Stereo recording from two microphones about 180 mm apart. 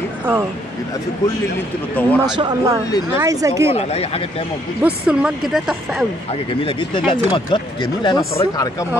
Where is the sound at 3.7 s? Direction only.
35° left (ahead or behind).